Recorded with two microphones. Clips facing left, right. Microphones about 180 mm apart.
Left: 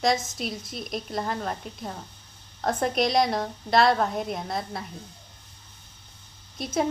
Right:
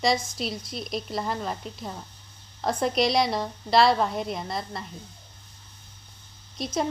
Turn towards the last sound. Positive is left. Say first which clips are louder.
# left 1 dB
turn(degrees=0)  # may be behind; listen again after turning